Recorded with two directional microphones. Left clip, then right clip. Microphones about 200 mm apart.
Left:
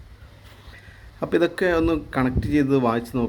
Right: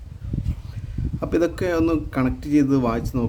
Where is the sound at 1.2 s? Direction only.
5° right (ahead or behind).